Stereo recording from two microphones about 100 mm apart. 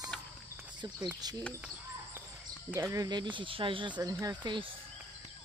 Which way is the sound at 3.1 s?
50° right (ahead or behind).